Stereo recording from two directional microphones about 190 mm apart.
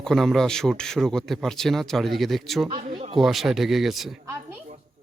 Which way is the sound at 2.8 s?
35° right (ahead or behind).